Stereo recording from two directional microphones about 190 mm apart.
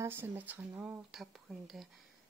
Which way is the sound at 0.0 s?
10° right (ahead or behind).